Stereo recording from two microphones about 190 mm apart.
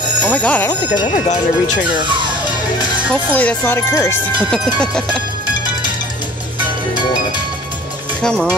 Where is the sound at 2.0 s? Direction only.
25° right (ahead or behind).